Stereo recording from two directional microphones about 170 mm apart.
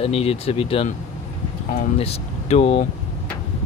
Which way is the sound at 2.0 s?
35° left (ahead or behind).